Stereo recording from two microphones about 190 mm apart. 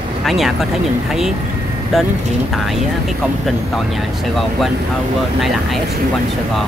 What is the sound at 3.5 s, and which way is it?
Speech, centre (ahead or behind).